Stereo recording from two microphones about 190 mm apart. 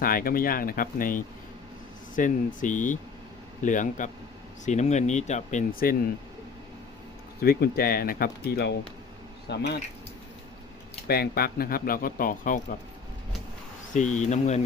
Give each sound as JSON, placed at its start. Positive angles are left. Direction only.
{"t": 0.0, "sound": "speech", "side_deg": 50}
{"t": 7.4, "sound": "speech", "side_deg": 50}
{"t": 9.5, "sound": "speech", "side_deg": 65}
{"t": 11.1, "sound": "speech", "side_deg": 55}
{"t": 13.9, "sound": "speech", "side_deg": 40}